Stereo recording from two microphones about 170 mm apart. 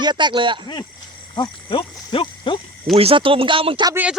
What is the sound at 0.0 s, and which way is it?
Speech, 25° right (ahead or behind).